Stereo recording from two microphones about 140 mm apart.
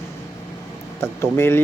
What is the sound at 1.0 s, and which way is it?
Speech, 20° left (ahead or behind).